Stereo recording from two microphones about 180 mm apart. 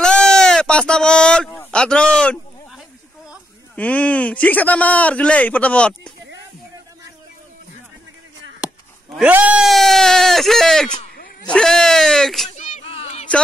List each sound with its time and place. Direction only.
0.0 s sheep: 5° left (ahead or behind)
3.7 s speech: 10° left (ahead or behind)
8.6 s speech: 5° right (ahead or behind)
12.5 s a sound: 40° left (ahead or behind)